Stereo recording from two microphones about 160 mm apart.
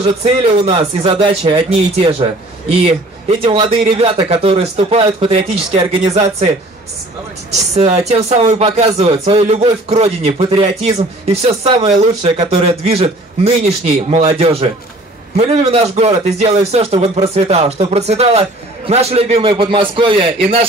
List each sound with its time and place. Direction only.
0.7 s a man's voice: 35° right (ahead or behind)
7.7 s a man's voice: 40° right (ahead or behind)